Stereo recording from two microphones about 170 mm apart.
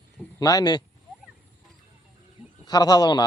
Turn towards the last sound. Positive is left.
turn(degrees=25)  # may be behind; listen again after turning